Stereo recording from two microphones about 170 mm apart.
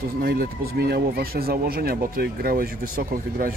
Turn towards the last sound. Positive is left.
turn(degrees=-55)  # may be behind; listen again after turning